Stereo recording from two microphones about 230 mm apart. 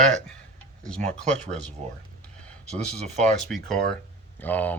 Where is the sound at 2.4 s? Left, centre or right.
Centre.